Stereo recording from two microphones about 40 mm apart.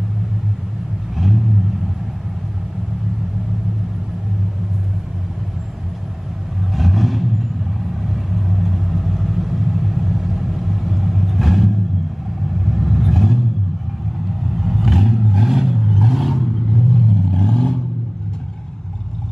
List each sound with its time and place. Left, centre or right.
1.1 s vehicle: centre
6.7 s vehicle: centre
14.4 s vehicle: centre
16.5 s vehicle: centre